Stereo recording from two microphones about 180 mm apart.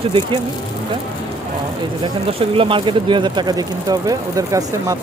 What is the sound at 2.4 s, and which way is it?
Speech, 30° right (ahead or behind).